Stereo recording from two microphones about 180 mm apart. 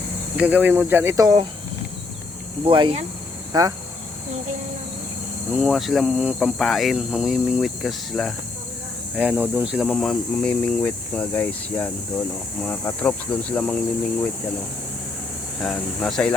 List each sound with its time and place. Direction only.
0.3 s speech: 10° right (ahead or behind)
2.6 s speech: 30° right (ahead or behind)
5.5 s speech: centre (ahead or behind)
15.6 s speech: centre (ahead or behind)